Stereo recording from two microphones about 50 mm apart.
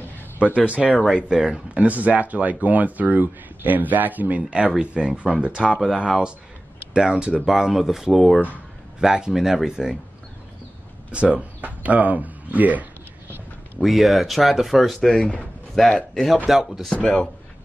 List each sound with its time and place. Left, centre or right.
0.7 s speech: right
1.7 s speech: right
4.5 s speech: right
11.1 s speech: right
13.8 s speech: centre
15.1 s speech: centre
15.8 s speech: centre
16.4 s speech: centre
16.9 s speech: left